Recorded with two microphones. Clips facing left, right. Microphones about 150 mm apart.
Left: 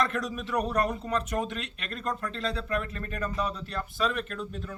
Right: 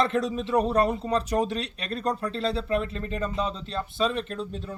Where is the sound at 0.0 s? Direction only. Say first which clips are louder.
Right 5 dB; 30° right (ahead or behind).